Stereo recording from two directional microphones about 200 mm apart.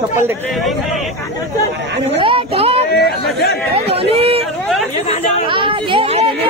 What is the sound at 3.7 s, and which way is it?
Chatter, 30° right (ahead or behind).